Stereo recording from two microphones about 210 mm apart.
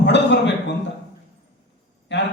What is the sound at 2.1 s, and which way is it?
Speech, 55° left (ahead or behind).